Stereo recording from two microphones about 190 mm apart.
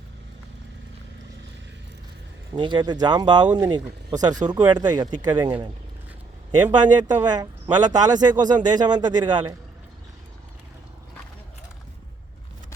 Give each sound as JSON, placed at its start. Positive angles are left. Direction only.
{"t": 2.5, "sound": "a man's voice", "side_deg": -25}
{"t": 6.7, "sound": "a man's voice", "side_deg": -20}